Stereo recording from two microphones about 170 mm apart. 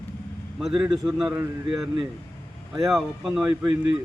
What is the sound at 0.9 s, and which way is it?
Speech, centre (ahead or behind).